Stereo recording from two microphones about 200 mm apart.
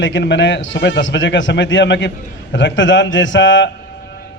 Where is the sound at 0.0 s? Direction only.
65° left (ahead or behind).